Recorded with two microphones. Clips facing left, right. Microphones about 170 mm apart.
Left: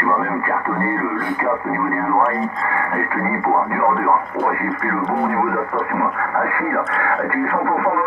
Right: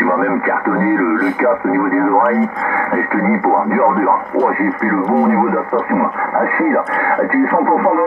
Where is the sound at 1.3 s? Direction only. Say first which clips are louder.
Right 7 dB; 90° right.